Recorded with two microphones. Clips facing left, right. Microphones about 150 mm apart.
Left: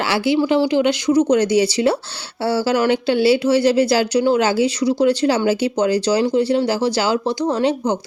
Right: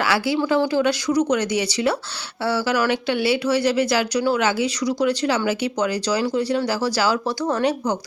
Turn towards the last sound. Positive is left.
turn(degrees=20)  # may be behind; listen again after turning